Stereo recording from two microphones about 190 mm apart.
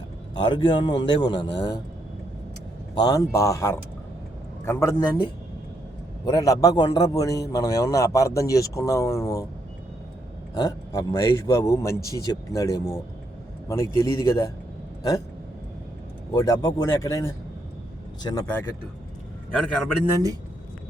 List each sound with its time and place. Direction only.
0.4 s a man's voice: 25° left (ahead or behind)
1.5 s speech: 65° left (ahead or behind)
2.9 s a man's voice: 20° left (ahead or behind)
10.5 s a man's voice: 20° left (ahead or behind)
16.3 s a man's voice: 20° left (ahead or behind)
19.5 s a man's voice: 5° left (ahead or behind)